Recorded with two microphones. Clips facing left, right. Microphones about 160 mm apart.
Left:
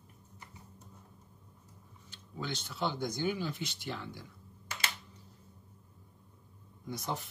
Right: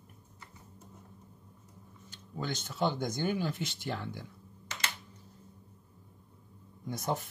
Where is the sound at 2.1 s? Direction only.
45° right (ahead or behind).